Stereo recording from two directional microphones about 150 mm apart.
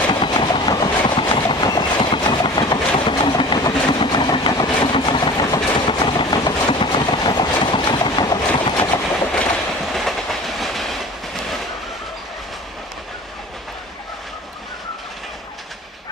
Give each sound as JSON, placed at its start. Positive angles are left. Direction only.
{"t": 0.1, "sound": "train", "side_deg": 30}
{"t": 3.1, "sound": "vehicle", "side_deg": 30}
{"t": 8.8, "sound": "train", "side_deg": 10}